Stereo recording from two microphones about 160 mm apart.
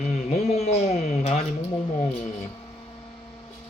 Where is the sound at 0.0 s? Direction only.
45° left (ahead or behind).